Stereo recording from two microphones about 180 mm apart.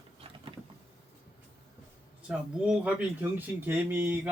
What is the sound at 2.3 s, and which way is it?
A man's voice, 5° right (ahead or behind).